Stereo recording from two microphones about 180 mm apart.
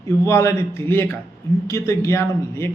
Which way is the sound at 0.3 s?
15° left (ahead or behind).